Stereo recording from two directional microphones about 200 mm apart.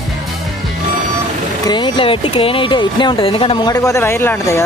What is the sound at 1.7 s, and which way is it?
Speech, 20° left (ahead or behind).